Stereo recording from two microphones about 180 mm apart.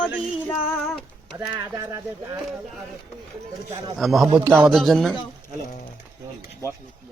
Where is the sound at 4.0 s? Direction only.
Centre (ahead or behind).